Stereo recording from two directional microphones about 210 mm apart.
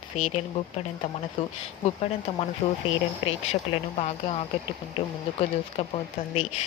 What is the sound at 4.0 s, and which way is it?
Speech, 30° left (ahead or behind).